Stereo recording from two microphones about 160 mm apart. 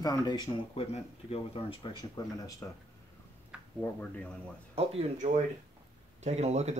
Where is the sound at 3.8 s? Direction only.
5° left (ahead or behind).